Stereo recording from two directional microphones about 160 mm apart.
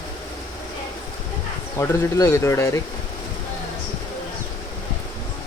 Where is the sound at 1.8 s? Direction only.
20° left (ahead or behind).